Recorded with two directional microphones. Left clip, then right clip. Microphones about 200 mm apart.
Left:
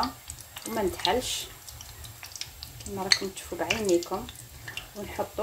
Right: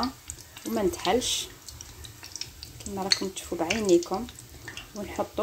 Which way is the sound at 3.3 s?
25° right (ahead or behind).